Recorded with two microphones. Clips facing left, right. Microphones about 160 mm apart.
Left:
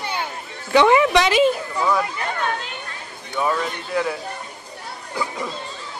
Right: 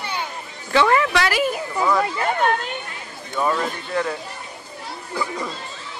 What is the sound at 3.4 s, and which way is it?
Speech, centre (ahead or behind).